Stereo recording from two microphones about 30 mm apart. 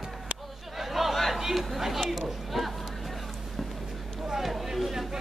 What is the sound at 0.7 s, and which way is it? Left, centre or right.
Chatter, centre.